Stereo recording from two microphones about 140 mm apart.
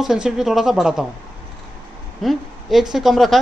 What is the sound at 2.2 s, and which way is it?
A man's voice, 5° right (ahead or behind).